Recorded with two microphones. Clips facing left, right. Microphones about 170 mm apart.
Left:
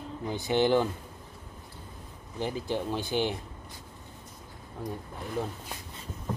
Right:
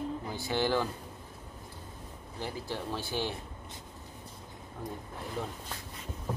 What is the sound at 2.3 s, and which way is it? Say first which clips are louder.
Speech: left 6 dB; 20° left (ahead or behind).